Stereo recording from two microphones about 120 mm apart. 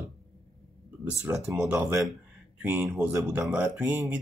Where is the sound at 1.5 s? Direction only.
10° right (ahead or behind).